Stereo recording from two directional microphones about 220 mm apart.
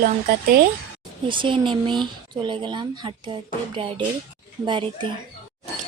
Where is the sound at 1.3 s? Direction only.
20° right (ahead or behind).